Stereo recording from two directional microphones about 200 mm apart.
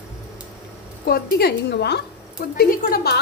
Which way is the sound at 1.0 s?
50° left (ahead or behind).